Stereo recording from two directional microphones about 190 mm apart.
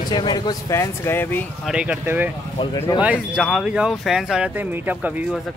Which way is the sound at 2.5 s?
25° left (ahead or behind).